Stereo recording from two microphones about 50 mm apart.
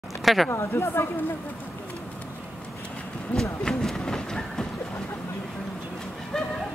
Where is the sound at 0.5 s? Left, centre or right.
Left.